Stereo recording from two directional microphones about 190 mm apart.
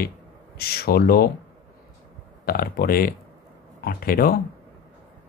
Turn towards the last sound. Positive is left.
turn(degrees=50)  # may be behind; listen again after turning